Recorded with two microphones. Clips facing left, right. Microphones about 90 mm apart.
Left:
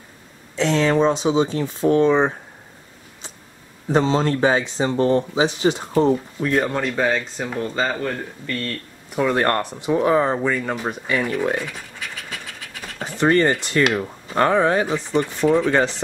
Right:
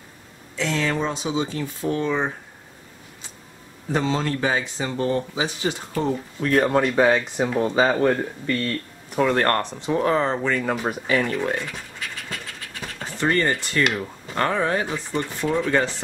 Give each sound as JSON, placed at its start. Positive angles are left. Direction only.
{"t": 0.6, "sound": "speech", "side_deg": 25}
{"t": 3.9, "sound": "speech", "side_deg": 25}
{"t": 6.4, "sound": "speech", "side_deg": 0}
{"t": 9.1, "sound": "speech", "side_deg": 5}
{"t": 10.6, "sound": "speech", "side_deg": 0}
{"t": 11.6, "sound": "dog", "side_deg": 5}
{"t": 13.0, "sound": "scratch", "side_deg": 15}
{"t": 13.3, "sound": "speech", "side_deg": 20}